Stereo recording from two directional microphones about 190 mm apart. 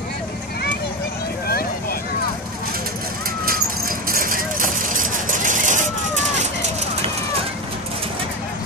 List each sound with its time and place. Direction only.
1.5 s vehicle: 55° left (ahead or behind)
4.1 s vehicle: 50° right (ahead or behind)